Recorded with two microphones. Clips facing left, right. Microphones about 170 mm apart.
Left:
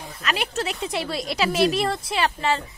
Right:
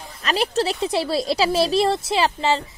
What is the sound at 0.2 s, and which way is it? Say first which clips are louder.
Speech: right 5 dB; 35° right (ahead or behind).